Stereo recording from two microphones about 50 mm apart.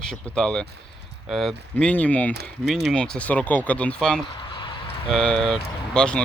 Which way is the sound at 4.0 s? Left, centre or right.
Centre.